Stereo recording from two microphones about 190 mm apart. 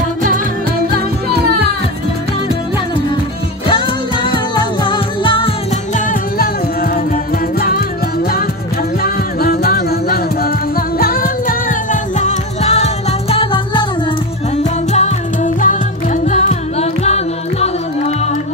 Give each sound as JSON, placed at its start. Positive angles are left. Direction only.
{"t": 3.6, "sound": "music", "side_deg": 25}
{"t": 5.9, "sound": "music", "side_deg": 45}
{"t": 9.0, "sound": "music", "side_deg": 55}
{"t": 14.9, "sound": "music", "side_deg": 35}